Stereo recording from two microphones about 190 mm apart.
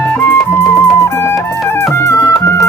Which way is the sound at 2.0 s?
15° left (ahead or behind).